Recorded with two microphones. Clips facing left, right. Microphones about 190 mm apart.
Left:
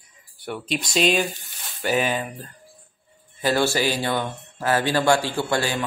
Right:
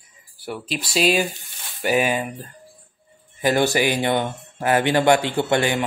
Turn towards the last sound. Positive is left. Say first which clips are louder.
# right 4 dB
turn(degrees=-20)  # may be behind; listen again after turning